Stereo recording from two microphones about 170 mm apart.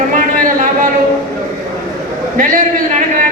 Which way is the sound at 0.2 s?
50° right (ahead or behind).